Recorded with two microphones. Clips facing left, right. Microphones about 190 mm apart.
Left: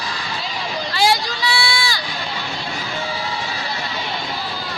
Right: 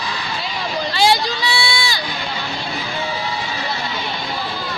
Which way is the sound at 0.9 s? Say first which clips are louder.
Right 2 dB; 25° right (ahead or behind).